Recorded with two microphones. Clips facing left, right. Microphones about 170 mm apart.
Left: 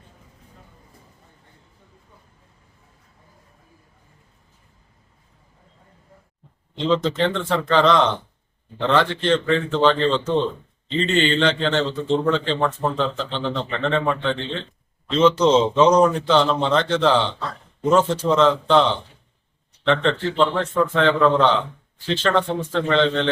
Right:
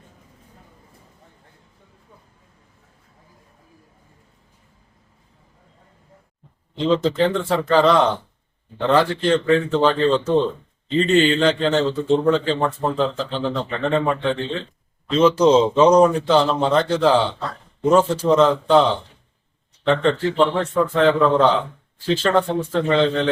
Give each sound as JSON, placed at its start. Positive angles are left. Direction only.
{"t": 7.0, "sound": "a man's voice", "side_deg": -5}
{"t": 13.0, "sound": "a man's voice", "side_deg": -5}